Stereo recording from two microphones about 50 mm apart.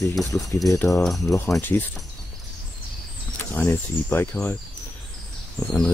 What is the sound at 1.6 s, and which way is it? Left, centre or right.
Speech, left.